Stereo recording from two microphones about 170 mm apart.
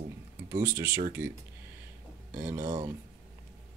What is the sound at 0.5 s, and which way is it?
Speech, 15° right (ahead or behind).